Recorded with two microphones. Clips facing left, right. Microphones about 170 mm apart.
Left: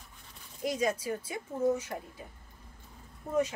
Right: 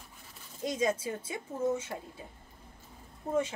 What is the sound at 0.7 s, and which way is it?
A woman's voice, 25° right (ahead or behind).